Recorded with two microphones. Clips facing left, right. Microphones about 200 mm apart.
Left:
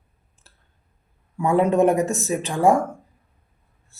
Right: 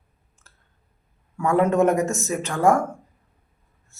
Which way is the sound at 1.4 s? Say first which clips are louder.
Left 1 dB; 15° left (ahead or behind).